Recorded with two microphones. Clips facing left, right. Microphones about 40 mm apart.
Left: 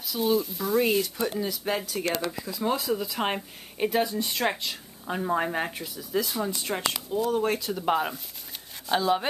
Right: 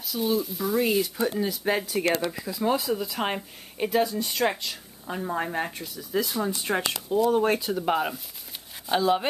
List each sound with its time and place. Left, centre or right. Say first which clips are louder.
0.0 s speech: left 1 dB; centre
7.2 s speech: right 3 dB; centre
7.7 s speech: right 1 dB; centre